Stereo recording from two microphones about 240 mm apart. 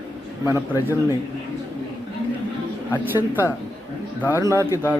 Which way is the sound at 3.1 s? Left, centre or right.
Centre.